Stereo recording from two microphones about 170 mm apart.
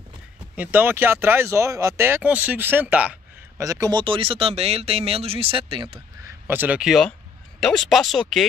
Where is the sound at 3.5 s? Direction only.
20° right (ahead or behind).